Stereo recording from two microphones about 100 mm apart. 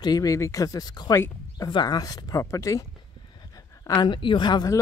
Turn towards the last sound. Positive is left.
turn(degrees=45)  # may be behind; listen again after turning